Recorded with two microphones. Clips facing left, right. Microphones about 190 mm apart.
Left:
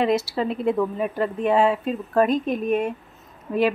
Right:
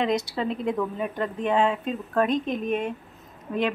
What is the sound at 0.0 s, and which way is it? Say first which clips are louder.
Speech: left 4 dB; 5° left (ahead or behind).